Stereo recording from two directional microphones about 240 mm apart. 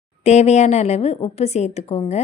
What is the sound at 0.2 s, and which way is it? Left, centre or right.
A woman's voice, left.